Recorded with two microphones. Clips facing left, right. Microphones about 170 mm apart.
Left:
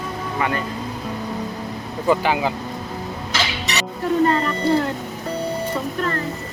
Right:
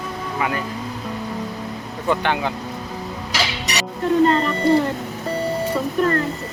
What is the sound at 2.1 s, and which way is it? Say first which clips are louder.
Speech: left 2 dB; 5° left (ahead or behind).